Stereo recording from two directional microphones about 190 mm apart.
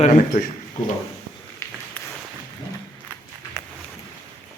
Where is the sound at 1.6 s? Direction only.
15° left (ahead or behind).